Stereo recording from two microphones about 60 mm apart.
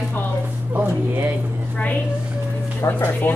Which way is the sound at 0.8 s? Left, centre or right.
Right.